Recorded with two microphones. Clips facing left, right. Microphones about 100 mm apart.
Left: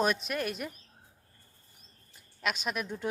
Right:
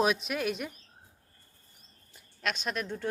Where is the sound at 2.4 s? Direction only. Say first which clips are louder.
Even; 5° left (ahead or behind).